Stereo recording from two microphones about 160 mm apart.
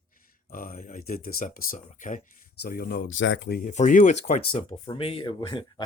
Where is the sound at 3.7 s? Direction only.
50° left (ahead or behind).